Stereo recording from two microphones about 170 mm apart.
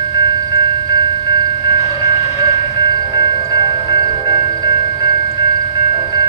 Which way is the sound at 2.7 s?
25° right (ahead or behind).